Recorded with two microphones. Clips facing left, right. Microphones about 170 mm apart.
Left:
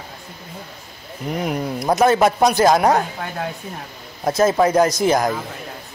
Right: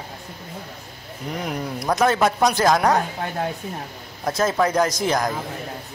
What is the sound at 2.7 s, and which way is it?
Speech, 25° left (ahead or behind).